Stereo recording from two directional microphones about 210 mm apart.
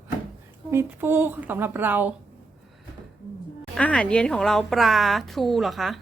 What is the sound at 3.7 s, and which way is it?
Speech, 5° left (ahead or behind).